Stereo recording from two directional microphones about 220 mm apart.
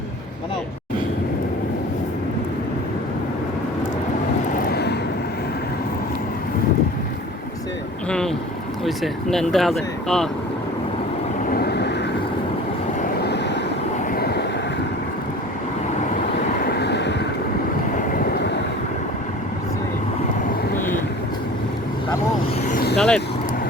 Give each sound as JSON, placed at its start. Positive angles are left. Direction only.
{"t": 4.5, "sound": "vehicle", "side_deg": 45}
{"t": 9.3, "sound": "speech", "side_deg": 0}
{"t": 11.4, "sound": "vehicle", "side_deg": 45}
{"t": 13.1, "sound": "vehicle", "side_deg": 50}
{"t": 16.6, "sound": "vehicle", "side_deg": 50}
{"t": 17.9, "sound": "vehicle", "side_deg": 40}
{"t": 22.6, "sound": "vehicle", "side_deg": 40}
{"t": 23.0, "sound": "vehicle", "side_deg": 5}